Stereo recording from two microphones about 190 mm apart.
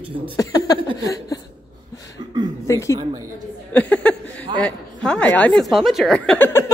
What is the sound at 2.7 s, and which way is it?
Speech, 15° left (ahead or behind).